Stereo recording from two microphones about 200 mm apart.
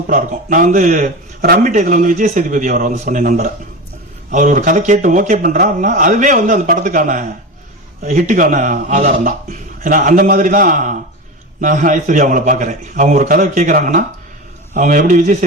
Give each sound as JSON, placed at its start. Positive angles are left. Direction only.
{"t": 0.1, "sound": "a man's voice", "side_deg": -40}